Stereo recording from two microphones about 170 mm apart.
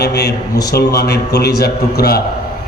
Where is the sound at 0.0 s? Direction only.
75° left (ahead or behind).